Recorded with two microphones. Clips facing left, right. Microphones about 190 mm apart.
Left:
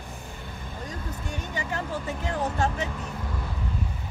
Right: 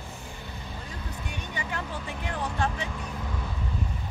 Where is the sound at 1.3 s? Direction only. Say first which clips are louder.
Left 3 dB; 40° left (ahead or behind).